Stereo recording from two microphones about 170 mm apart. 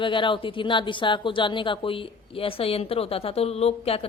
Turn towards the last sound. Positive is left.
turn(degrees=35)  # may be behind; listen again after turning